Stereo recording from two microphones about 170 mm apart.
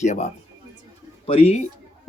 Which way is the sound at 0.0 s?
45° left (ahead or behind).